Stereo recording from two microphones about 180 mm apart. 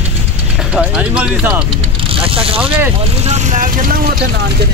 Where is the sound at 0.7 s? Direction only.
5° right (ahead or behind).